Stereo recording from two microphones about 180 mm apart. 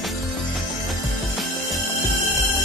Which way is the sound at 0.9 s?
Centre (ahead or behind).